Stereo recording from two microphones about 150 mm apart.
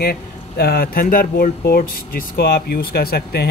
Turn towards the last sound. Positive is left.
turn(degrees=90)